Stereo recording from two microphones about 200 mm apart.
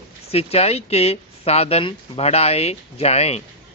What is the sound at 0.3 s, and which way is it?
Speech, 30° left (ahead or behind).